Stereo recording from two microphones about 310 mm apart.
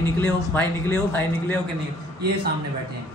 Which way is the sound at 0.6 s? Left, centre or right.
Centre.